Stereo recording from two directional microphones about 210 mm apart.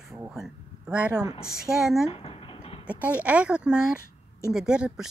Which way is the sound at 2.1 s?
25° left (ahead or behind).